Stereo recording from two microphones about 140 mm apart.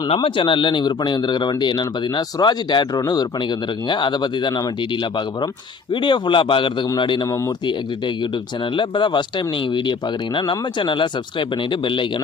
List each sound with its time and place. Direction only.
0.1 s speech: 35° left (ahead or behind)
7.3 s speech: 20° left (ahead or behind)
7.6 s speech: 35° left (ahead or behind)